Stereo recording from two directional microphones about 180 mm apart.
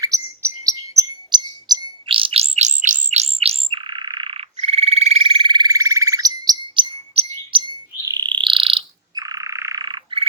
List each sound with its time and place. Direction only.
0.0 s chirp: 20° right (ahead or behind)